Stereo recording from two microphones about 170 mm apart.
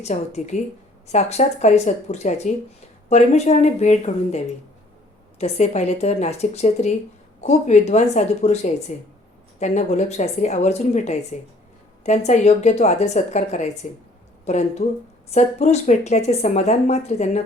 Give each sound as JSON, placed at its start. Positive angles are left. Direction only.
{"t": 0.0, "sound": "speech", "side_deg": 45}